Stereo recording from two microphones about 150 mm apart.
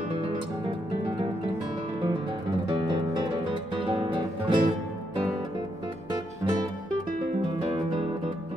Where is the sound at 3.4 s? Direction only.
35° right (ahead or behind).